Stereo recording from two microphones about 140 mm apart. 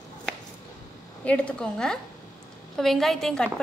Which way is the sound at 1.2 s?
10° left (ahead or behind).